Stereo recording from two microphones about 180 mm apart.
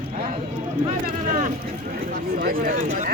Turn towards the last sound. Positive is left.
turn(degrees=-45)  # may be behind; listen again after turning